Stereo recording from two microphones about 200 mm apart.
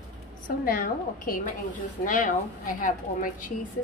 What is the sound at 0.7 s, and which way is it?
A woman's voice, 45° left (ahead or behind).